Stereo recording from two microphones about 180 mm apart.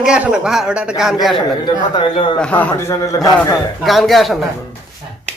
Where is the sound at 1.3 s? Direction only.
25° left (ahead or behind).